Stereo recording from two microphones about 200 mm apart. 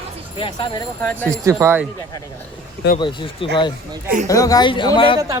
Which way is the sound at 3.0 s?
25° left (ahead or behind).